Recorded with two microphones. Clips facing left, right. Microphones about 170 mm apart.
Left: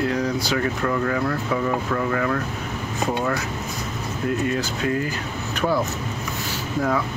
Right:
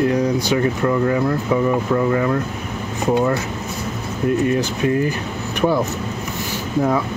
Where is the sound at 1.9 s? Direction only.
25° right (ahead or behind).